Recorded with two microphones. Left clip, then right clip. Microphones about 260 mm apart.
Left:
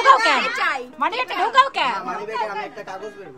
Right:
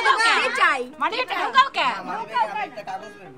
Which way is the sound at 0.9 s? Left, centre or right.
Centre.